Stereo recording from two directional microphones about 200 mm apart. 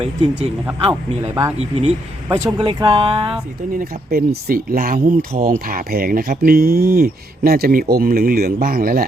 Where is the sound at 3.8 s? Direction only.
50° right (ahead or behind).